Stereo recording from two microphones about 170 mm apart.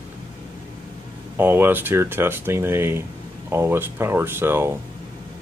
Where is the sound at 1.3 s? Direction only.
10° right (ahead or behind).